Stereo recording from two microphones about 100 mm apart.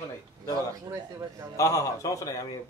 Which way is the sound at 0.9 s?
25° right (ahead or behind).